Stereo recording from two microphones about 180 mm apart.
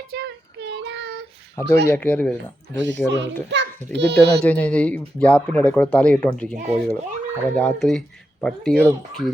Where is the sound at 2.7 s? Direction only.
80° right.